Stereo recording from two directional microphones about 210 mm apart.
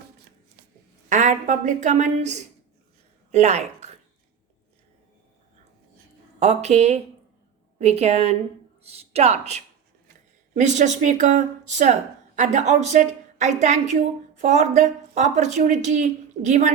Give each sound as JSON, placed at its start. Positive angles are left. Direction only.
{"t": 1.1, "sound": "a woman's voice", "side_deg": -35}
{"t": 6.4, "sound": "a woman's voice", "side_deg": -30}